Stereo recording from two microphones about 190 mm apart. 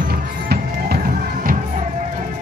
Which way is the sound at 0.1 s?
55° right (ahead or behind).